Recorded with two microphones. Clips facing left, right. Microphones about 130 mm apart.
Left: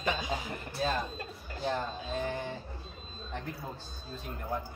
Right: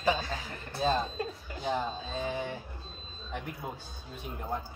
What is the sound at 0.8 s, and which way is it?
Speech, 25° right (ahead or behind).